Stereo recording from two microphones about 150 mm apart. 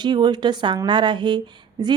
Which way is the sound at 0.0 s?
30° right (ahead or behind).